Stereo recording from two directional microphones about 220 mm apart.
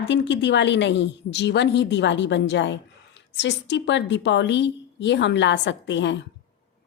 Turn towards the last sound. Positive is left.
turn(degrees=55)  # may be behind; listen again after turning